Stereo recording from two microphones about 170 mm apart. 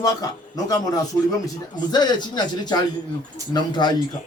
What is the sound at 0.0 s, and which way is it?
A man's voice, 20° left (ahead or behind).